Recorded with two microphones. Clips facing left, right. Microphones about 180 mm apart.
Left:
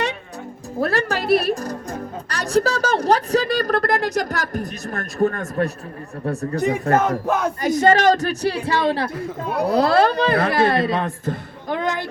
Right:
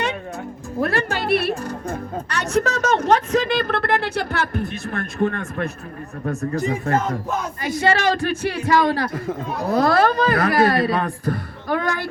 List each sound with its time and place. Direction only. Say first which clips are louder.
0.8 s speech: left 1 dB; 40° left (ahead or behind)
6.9 s speech: left 5 dB; 65° left (ahead or behind)
7.6 s speech: left 4 dB; 45° left (ahead or behind); by 9.0 s 30° left (ahead or behind)
9.5 s speech: left 6 dB; 65° left (ahead or behind)
9.7 s speech: even; 30° left (ahead or behind)